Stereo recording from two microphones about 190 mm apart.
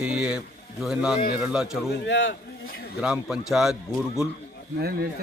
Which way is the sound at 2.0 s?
85° left.